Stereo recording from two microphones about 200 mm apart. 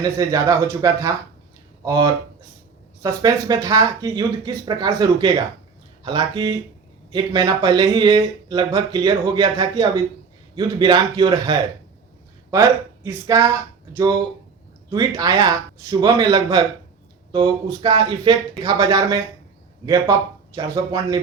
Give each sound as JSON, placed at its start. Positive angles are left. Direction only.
{"t": 0.0, "sound": "speech", "side_deg": -20}